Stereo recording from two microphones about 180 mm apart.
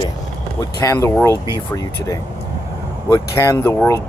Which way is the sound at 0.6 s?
20° left (ahead or behind).